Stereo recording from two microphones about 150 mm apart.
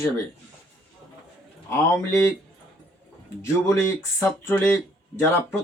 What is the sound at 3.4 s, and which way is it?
Speech, 20° left (ahead or behind).